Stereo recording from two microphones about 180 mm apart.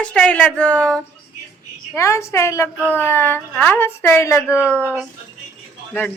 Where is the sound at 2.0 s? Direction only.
15° left (ahead or behind).